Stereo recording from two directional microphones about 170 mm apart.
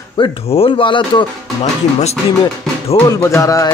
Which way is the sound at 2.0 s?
35° left (ahead or behind).